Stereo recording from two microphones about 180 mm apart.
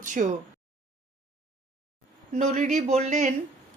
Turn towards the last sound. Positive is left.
turn(degrees=-40)  # may be behind; listen again after turning